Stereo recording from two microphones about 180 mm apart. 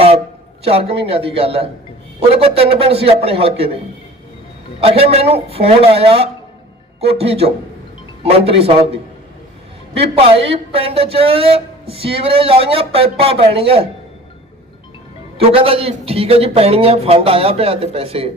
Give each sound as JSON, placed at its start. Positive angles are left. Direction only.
{"t": 0.6, "sound": "a woman's voice", "side_deg": -35}
{"t": 4.8, "sound": "a woman's voice", "side_deg": -35}
{"t": 15.4, "sound": "a woman's voice", "side_deg": -30}